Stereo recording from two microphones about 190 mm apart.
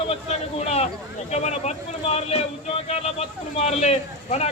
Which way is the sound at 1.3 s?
35° left (ahead or behind).